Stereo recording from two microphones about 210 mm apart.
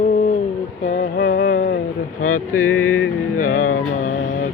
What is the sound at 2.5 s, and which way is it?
Mantra, 90° left.